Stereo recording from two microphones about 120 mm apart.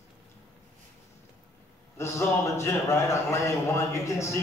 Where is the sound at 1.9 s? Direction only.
25° left (ahead or behind).